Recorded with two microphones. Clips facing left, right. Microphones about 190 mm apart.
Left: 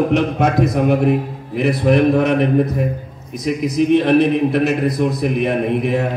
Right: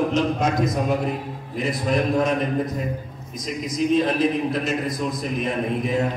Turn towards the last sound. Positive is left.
turn(degrees=70)  # may be behind; listen again after turning